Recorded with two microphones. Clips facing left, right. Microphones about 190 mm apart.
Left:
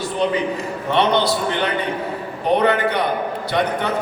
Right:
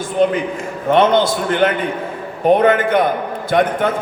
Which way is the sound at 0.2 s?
50° right (ahead or behind).